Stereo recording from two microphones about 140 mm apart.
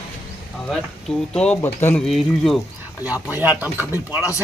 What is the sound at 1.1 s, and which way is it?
Speech, 5° left (ahead or behind).